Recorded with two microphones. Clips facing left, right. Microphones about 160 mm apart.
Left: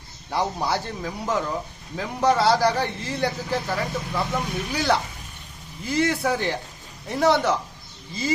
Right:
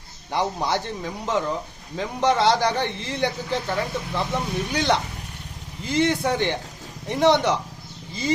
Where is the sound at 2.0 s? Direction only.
5° left (ahead or behind).